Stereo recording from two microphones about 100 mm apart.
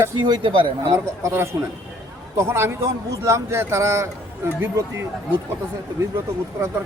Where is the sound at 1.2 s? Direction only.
25° right (ahead or behind).